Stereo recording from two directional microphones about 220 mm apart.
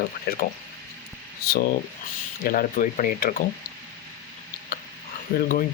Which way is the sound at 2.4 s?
40° left (ahead or behind).